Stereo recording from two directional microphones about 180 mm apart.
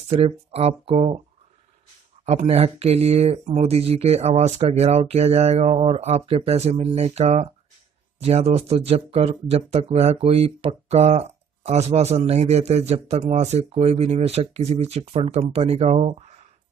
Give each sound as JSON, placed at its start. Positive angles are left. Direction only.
{"t": 0.1, "sound": "speech", "side_deg": -35}
{"t": 2.2, "sound": "speech", "side_deg": -35}